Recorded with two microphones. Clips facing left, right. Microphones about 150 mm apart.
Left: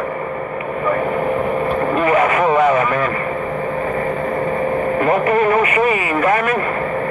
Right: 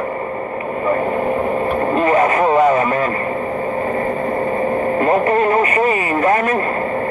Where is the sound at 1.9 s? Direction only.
35° right (ahead or behind).